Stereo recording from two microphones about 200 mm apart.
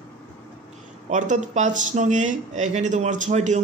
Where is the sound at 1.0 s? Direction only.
35° right (ahead or behind).